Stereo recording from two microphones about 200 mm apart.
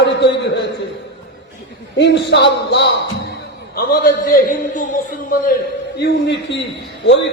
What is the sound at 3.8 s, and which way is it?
A man's voice, 45° left (ahead or behind).